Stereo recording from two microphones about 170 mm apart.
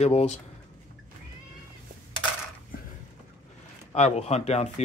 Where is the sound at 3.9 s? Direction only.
40° left (ahead or behind).